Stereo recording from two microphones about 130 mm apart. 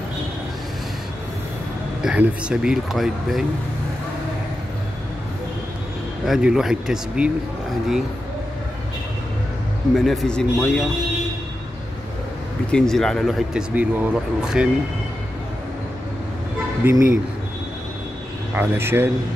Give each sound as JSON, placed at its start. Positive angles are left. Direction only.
{"t": 2.0, "sound": "speech", "side_deg": -5}
{"t": 6.2, "sound": "speech", "side_deg": 0}
{"t": 9.9, "sound": "speech", "side_deg": 0}
{"t": 12.7, "sound": "speech", "side_deg": 5}
{"t": 16.8, "sound": "speech", "side_deg": -15}
{"t": 18.5, "sound": "speech", "side_deg": -15}